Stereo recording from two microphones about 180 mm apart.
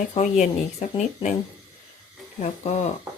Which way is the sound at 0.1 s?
40° left (ahead or behind).